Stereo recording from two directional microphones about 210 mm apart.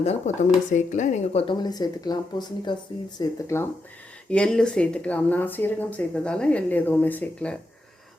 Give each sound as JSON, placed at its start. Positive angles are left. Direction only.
{"t": 0.0, "sound": "speech", "side_deg": 30}